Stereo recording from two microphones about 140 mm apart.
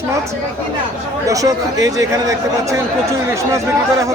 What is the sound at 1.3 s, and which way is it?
Speech, 25° right (ahead or behind).